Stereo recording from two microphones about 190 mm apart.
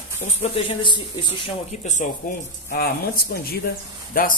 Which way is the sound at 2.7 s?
50° left (ahead or behind).